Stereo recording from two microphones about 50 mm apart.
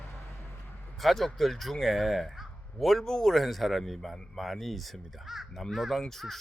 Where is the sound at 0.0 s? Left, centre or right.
Left.